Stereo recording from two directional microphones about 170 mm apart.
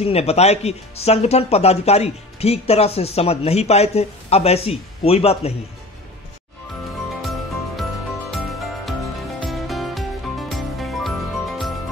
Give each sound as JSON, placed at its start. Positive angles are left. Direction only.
{"t": 0.0, "sound": "speech", "side_deg": 35}
{"t": 7.2, "sound": "music", "side_deg": 0}
{"t": 9.4, "sound": "music", "side_deg": 0}